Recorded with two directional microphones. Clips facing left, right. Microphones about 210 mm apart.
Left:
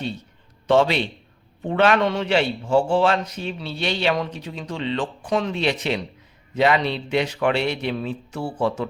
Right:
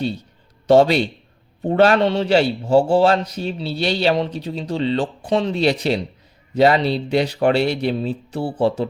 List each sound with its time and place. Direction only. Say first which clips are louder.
0.7 s a man's voice: right 5 dB; 40° right (ahead or behind)